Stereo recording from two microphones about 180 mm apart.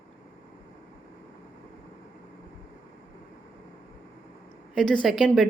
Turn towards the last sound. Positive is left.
turn(degrees=0)  # may be behind; listen again after turning